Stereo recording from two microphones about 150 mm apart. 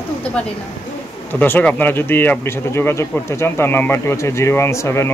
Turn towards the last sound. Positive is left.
turn(degrees=20)  # may be behind; listen again after turning